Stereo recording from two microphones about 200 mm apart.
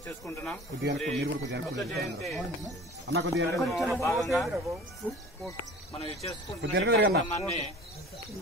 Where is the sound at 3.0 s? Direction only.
60° right (ahead or behind).